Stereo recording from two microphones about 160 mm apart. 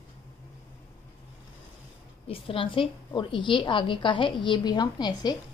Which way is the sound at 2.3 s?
35° left (ahead or behind).